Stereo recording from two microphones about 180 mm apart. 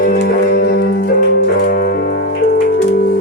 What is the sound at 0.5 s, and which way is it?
Music, 65° left (ahead or behind).